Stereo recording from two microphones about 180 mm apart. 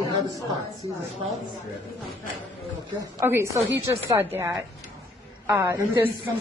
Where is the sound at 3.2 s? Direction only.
15° right (ahead or behind).